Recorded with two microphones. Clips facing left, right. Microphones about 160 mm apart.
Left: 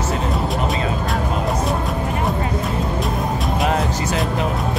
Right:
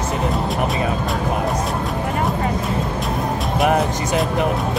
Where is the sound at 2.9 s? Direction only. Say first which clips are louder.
Even; centre (ahead or behind).